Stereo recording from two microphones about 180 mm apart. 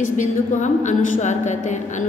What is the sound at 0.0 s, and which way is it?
A woman's voice, 45° left (ahead or behind).